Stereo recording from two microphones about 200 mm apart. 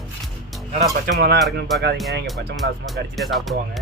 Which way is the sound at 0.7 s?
40° right (ahead or behind).